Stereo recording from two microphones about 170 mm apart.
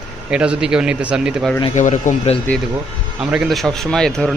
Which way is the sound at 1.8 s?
45° left (ahead or behind).